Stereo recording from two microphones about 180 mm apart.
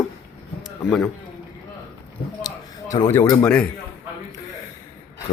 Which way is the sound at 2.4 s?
20° left (ahead or behind).